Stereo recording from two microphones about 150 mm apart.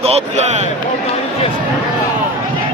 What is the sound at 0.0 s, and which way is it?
Speech, 40° right (ahead or behind).